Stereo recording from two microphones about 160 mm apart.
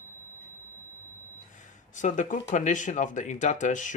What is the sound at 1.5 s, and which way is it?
Speech, 50° left (ahead or behind).